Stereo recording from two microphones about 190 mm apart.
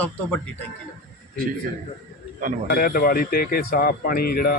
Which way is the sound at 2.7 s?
55° left (ahead or behind).